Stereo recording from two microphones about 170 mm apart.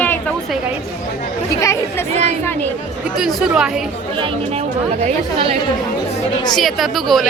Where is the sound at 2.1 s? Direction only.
40° right (ahead or behind).